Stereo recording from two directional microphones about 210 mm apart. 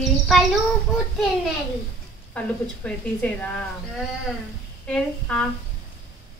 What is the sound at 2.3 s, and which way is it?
A woman's voice, 5° left (ahead or behind).